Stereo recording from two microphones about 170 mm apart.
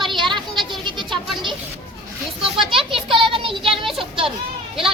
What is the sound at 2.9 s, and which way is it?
Child singing, 30° right (ahead or behind).